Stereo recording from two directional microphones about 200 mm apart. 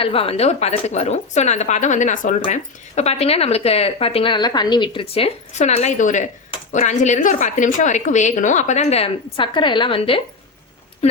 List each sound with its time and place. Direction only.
0.0 s a woman's voice: 30° left (ahead or behind)